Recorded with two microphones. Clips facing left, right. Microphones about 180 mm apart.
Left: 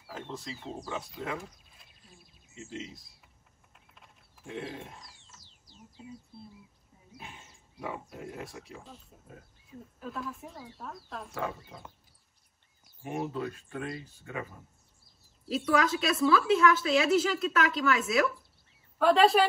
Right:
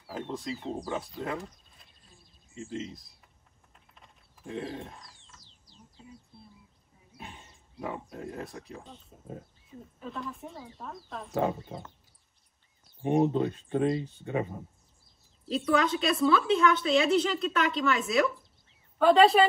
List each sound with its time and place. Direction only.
0.1 s a woman's voice: centre (ahead or behind)
3.7 s a sound: centre (ahead or behind)
7.2 s a woman's voice: centre (ahead or behind)
13.0 s speech: 30° right (ahead or behind)
15.4 s a woman's voice: centre (ahead or behind)